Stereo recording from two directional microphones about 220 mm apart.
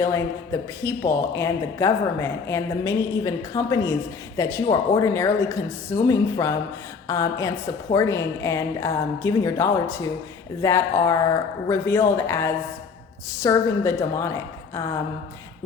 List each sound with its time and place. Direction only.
0.0 s speech: 15° left (ahead or behind)